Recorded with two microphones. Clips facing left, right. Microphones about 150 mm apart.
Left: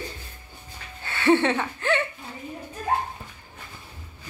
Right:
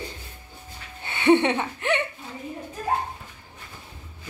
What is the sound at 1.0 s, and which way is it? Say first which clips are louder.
Speech: right 2 dB; 20° right (ahead or behind).